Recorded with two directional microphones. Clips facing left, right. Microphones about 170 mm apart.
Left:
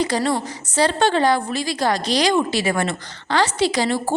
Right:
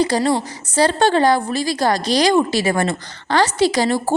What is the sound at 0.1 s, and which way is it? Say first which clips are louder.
A woman's voice: right 3 dB; 35° right (ahead or behind).